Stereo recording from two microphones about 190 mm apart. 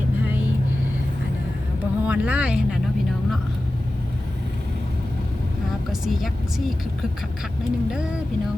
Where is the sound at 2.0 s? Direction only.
10° right (ahead or behind).